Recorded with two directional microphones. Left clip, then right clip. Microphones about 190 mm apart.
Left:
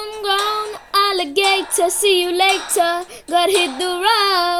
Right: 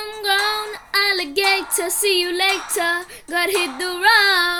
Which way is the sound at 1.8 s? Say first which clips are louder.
Left 4 dB; 10° left (ahead or behind).